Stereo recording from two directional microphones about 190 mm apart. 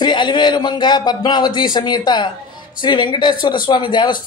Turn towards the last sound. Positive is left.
turn(degrees=25)  # may be behind; listen again after turning